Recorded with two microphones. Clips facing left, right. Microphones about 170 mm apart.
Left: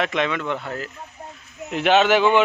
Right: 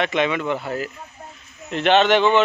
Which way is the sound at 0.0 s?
Centre (ahead or behind).